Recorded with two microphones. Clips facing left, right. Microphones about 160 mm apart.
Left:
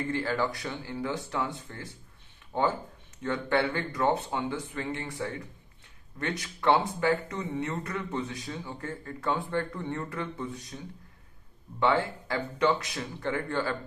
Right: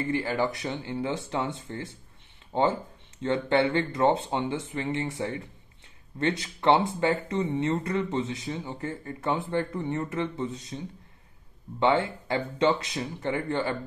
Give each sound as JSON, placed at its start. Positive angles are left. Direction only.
{"t": 0.1, "sound": "speech", "side_deg": -20}
{"t": 11.8, "sound": "speech", "side_deg": -20}